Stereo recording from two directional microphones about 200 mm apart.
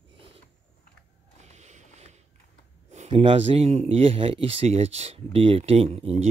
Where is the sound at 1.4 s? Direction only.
35° right (ahead or behind).